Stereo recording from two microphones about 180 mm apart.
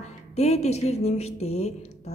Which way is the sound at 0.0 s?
40° left (ahead or behind).